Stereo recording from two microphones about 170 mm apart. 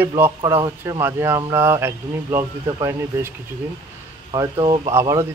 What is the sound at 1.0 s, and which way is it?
Speech, 15° right (ahead or behind).